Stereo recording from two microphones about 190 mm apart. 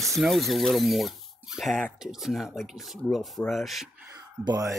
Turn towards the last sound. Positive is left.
turn(degrees=-15)  # may be behind; listen again after turning